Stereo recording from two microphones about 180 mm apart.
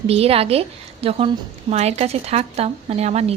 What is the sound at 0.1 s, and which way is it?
Speech, 35° right (ahead or behind).